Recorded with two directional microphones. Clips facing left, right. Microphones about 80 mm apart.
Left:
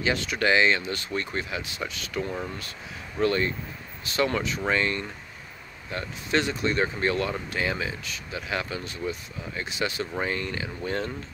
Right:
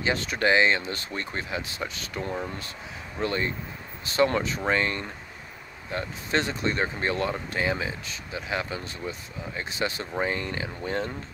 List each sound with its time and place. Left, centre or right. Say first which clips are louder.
0.0 s speech: even; right
3.2 s speech: left 4 dB; right